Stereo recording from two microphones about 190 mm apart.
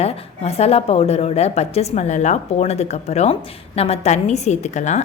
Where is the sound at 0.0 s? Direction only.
30° left (ahead or behind).